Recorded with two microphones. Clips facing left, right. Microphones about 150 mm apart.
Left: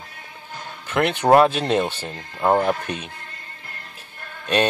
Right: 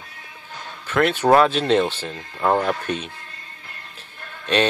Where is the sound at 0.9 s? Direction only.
15° left (ahead or behind).